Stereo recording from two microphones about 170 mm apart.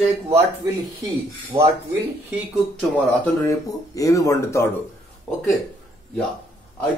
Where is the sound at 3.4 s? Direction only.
20° left (ahead or behind).